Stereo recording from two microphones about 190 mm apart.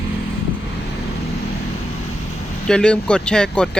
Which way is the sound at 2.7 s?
5° left (ahead or behind).